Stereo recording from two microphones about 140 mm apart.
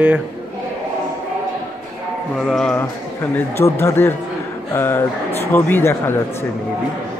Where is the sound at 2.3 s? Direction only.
5° left (ahead or behind).